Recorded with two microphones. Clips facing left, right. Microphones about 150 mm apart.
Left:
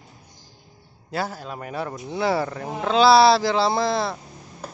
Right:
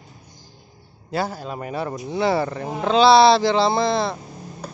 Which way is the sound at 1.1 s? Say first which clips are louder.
Right 3 dB; centre (ahead or behind).